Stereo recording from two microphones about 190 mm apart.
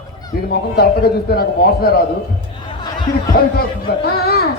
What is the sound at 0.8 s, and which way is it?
A man's voice, 55° left (ahead or behind).